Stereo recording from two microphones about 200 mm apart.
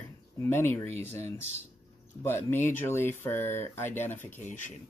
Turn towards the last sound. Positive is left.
turn(degrees=10)  # may be behind; listen again after turning